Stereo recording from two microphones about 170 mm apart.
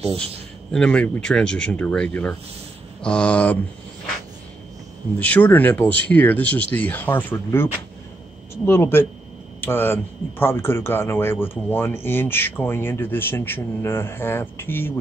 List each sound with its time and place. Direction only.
0.0 s a man's voice: 5° left (ahead or behind)
5.2 s speech: 10° left (ahead or behind)